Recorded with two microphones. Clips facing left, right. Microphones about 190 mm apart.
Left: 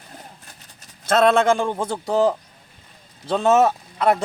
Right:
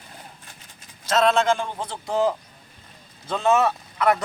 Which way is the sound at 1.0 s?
55° left (ahead or behind).